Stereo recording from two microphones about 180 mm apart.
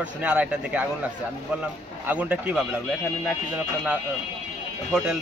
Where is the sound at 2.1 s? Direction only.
5° right (ahead or behind).